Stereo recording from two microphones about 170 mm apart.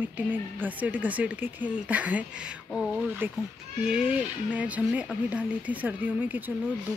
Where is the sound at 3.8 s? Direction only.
5° right (ahead or behind).